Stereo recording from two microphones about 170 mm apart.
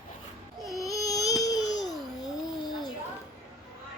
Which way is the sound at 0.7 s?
20° left (ahead or behind).